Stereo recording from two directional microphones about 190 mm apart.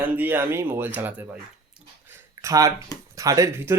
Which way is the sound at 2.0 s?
15° right (ahead or behind).